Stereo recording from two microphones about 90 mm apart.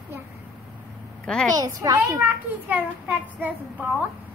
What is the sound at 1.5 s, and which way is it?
Speech, 40° right (ahead or behind).